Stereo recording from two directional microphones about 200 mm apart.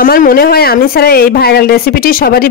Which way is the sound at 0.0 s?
45° left (ahead or behind).